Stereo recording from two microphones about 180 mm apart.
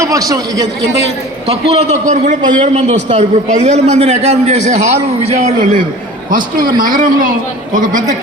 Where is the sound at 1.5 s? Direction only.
40° right (ahead or behind).